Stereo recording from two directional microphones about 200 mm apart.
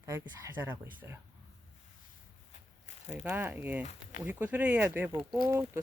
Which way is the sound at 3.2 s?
10° right (ahead or behind).